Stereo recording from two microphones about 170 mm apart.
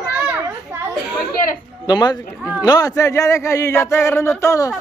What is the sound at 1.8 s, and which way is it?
Speech, 25° left (ahead or behind).